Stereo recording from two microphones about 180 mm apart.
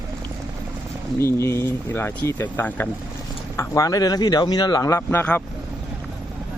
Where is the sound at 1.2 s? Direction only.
15° left (ahead or behind).